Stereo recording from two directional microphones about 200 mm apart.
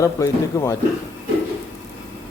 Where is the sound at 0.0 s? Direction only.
15° left (ahead or behind).